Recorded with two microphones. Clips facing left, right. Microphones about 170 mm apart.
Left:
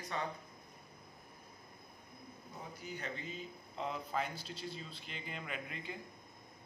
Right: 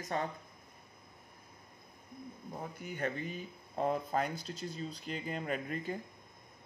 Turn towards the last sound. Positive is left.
turn(degrees=-45)  # may be behind; listen again after turning